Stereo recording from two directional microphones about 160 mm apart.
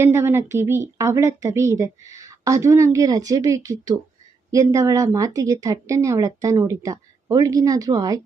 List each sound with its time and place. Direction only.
0.0 s a woman's voice: 15° right (ahead or behind)